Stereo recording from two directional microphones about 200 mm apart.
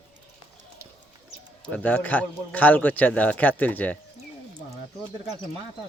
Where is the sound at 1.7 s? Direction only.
5° left (ahead or behind).